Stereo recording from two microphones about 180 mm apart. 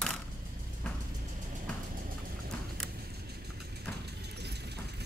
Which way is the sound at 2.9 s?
60° right (ahead or behind).